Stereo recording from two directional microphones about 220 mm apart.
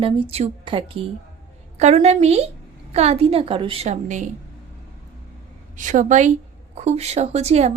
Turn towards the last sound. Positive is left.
turn(degrees=-30)  # may be behind; listen again after turning